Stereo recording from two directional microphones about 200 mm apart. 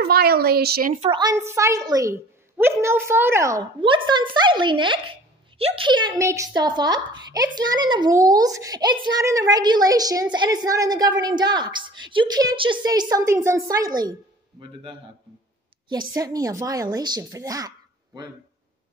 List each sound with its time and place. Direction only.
0.0 s a woman's voice: 50° right (ahead or behind)
1.0 s a woman's voice: 20° right (ahead or behind)
16.2 s a woman's voice: 20° right (ahead or behind)